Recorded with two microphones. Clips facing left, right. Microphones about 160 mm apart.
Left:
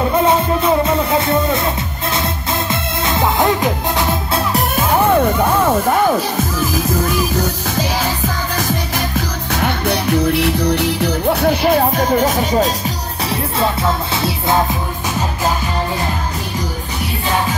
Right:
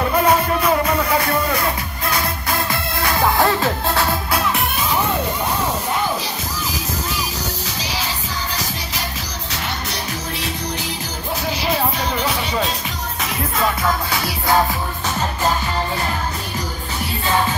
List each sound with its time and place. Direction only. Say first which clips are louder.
0.2 s music: left 2 dB; 25° left (ahead or behind)
4.8 s music: left 9 dB; 55° left (ahead or behind)
13.3 s music: left 3 dB; 30° left (ahead or behind)